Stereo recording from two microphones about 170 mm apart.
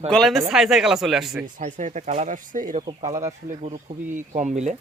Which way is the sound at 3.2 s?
40° right (ahead or behind).